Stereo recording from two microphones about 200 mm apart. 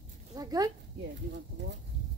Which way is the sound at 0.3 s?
20° right (ahead or behind).